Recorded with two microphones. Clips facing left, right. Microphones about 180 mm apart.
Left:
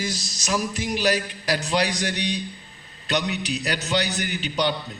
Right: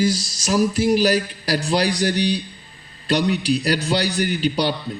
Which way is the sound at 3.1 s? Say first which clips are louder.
Right 7 dB; 35° right (ahead or behind).